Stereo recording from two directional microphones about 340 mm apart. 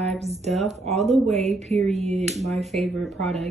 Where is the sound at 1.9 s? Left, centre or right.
Centre.